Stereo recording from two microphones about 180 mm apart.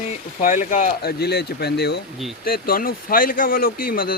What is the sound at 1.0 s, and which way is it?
Speech, 65° left (ahead or behind).